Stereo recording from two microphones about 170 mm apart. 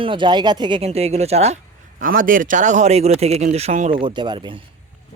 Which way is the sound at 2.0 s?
55° right (ahead or behind).